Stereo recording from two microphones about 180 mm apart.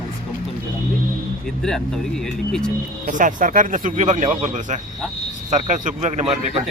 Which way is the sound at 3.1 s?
45° right (ahead or behind).